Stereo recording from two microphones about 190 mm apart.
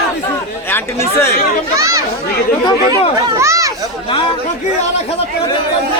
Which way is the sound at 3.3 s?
15° right (ahead or behind).